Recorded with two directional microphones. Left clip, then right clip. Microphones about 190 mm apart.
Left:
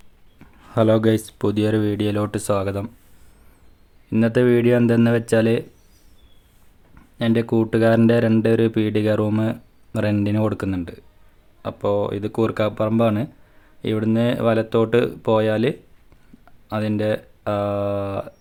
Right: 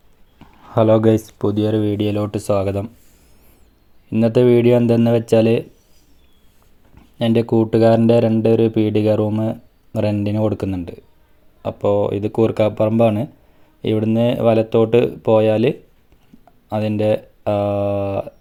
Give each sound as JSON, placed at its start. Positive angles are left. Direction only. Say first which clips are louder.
{"t": 0.3, "sound": "speech", "louder": "right 3 dB", "side_deg": 0}
{"t": 4.2, "sound": "speech", "louder": "right 4 dB", "side_deg": -5}
{"t": 7.3, "sound": "speech", "louder": "right 4 dB", "side_deg": 0}